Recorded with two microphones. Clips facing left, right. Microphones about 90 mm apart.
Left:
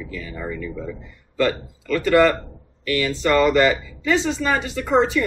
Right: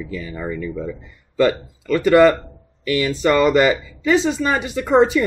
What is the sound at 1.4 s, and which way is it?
A man's voice, 15° right (ahead or behind).